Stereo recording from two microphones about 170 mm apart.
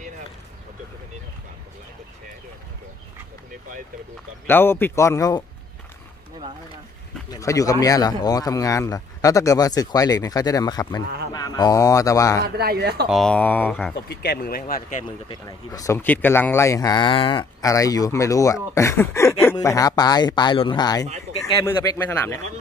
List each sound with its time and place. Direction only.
4.5 s speech: 10° left (ahead or behind)
7.2 s a man's voice: 20° left (ahead or behind)
12.4 s speech: 70° right (ahead or behind)
13.1 s speech: 5° left (ahead or behind)
14.0 s speech: 70° left (ahead or behind); by 15.0 s 55° left (ahead or behind)
15.0 s speech: 25° left (ahead or behind)
21.6 s speech: 10° left (ahead or behind)